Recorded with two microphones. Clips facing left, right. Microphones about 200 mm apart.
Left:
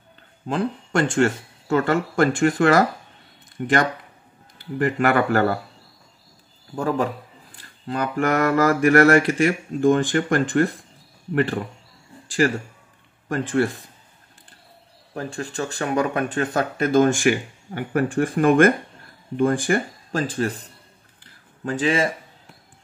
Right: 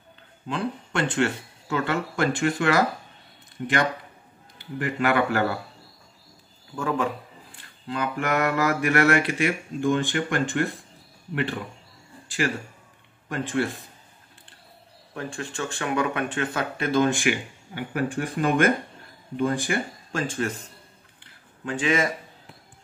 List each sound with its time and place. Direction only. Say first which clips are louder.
0.5 s speech: left 5 dB; 45° left (ahead or behind)
6.7 s speech: left 3 dB; 35° left (ahead or behind)
12.4 s speech: left 6 dB; 45° left (ahead or behind)
15.1 s speech: left 4 dB; 35° left (ahead or behind)
21.2 s a sound: left 5 dB; 35° left (ahead or behind)